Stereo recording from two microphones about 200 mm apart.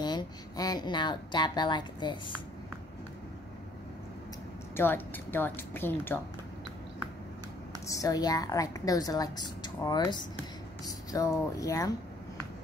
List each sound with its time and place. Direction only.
0.0 s a woman's voice: 20° left (ahead or behind)
4.7 s a woman's voice: 10° left (ahead or behind)
7.8 s a woman's voice: 15° left (ahead or behind)